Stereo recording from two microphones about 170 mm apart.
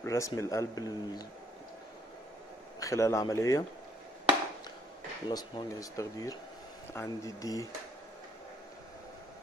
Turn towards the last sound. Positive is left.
turn(degrees=20)  # may be behind; listen again after turning